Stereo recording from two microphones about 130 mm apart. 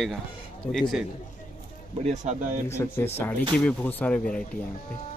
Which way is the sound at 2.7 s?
20° left (ahead or behind).